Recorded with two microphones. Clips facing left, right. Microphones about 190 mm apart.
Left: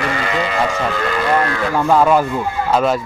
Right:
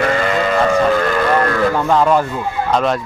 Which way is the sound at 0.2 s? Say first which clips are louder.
Right 4 dB; 50° right (ahead or behind).